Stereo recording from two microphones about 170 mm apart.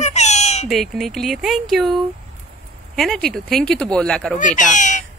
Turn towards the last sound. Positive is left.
turn(degrees=45)  # may be behind; listen again after turning